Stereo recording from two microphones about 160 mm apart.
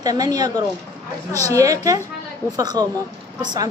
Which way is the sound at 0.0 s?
25° right (ahead or behind).